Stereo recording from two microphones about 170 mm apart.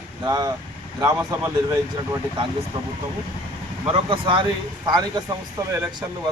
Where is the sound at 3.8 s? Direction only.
30° right (ahead or behind).